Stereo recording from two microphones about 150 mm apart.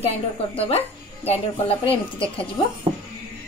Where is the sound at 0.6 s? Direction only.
40° left (ahead or behind).